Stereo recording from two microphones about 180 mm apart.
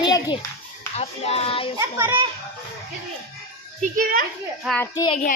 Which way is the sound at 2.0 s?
20° right (ahead or behind).